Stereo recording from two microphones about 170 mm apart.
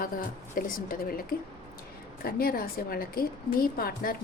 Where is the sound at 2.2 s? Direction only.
60° left (ahead or behind).